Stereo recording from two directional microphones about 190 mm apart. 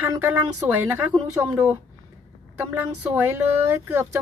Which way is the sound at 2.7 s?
10° right (ahead or behind).